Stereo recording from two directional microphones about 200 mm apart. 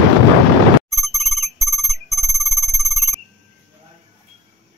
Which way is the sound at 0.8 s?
Centre (ahead or behind).